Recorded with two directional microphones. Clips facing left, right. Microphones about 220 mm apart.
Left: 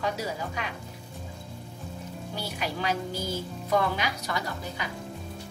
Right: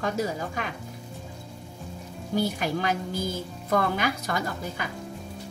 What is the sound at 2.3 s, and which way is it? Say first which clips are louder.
A woman's voice: right 8 dB; 45° right (ahead or behind).